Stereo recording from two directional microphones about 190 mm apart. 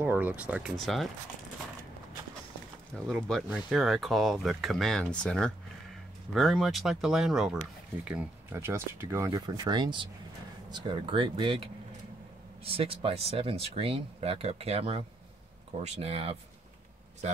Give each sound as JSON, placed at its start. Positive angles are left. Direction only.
{"t": 0.0, "sound": "speech", "side_deg": -10}
{"t": 3.1, "sound": "speech", "side_deg": 0}